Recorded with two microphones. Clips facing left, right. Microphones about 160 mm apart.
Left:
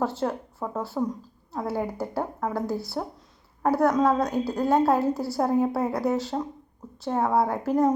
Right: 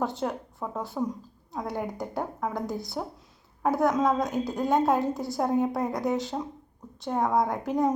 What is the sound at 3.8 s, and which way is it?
A woman's voice, centre (ahead or behind).